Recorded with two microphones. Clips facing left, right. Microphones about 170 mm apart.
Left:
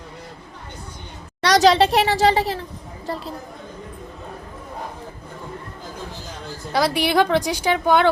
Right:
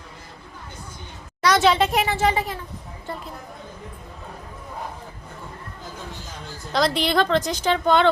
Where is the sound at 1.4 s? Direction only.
35° left (ahead or behind).